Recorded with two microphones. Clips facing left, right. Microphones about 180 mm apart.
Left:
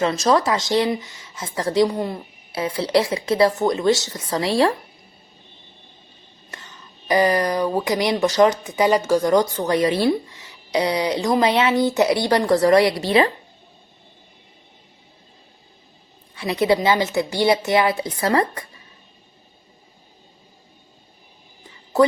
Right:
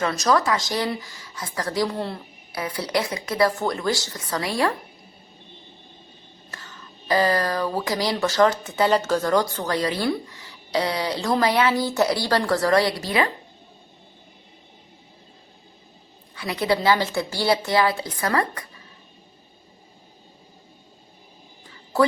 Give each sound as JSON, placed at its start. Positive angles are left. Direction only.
{"t": 0.0, "sound": "speech", "side_deg": 25}
{"t": 6.5, "sound": "speech", "side_deg": 20}
{"t": 16.3, "sound": "speech", "side_deg": 25}